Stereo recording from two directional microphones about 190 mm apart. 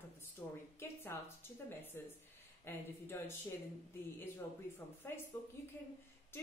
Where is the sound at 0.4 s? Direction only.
20° left (ahead or behind).